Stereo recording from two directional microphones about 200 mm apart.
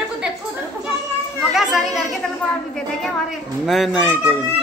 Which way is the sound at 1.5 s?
5° right (ahead or behind).